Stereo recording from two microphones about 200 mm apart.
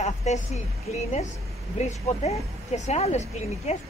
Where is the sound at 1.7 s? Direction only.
35° left (ahead or behind).